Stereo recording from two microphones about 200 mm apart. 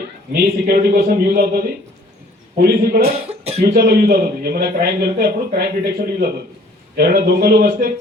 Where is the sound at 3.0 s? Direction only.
30° right (ahead or behind).